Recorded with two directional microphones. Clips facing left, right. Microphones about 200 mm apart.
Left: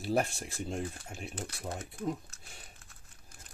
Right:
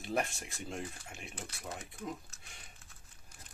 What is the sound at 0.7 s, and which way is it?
Speech, 35° left (ahead or behind).